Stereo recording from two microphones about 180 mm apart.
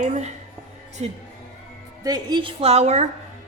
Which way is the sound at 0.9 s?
40° right (ahead or behind).